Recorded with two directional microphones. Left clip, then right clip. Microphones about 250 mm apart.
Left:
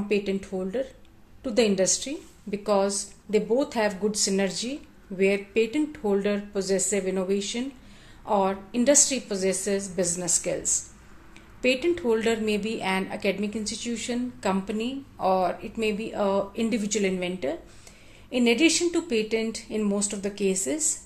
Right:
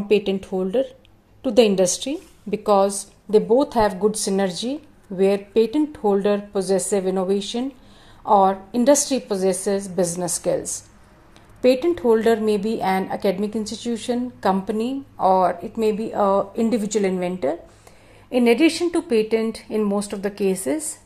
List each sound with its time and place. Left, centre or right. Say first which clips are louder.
0.1 s a woman's voice: right 8 dB; right